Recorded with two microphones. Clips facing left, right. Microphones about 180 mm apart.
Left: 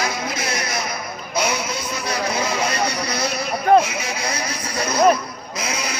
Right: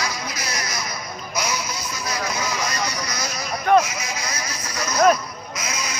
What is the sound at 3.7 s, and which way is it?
Speech, 30° left (ahead or behind).